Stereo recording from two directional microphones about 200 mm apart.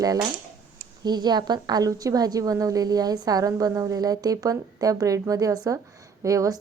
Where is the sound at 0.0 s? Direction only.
15° right (ahead or behind).